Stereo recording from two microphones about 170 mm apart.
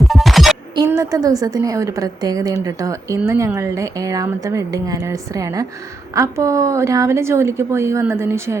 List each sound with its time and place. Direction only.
0.0 s music: centre (ahead or behind)
0.9 s a woman's voice: 20° right (ahead or behind)